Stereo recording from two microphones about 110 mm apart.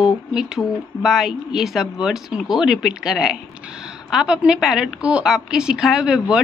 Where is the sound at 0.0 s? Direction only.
5° right (ahead or behind).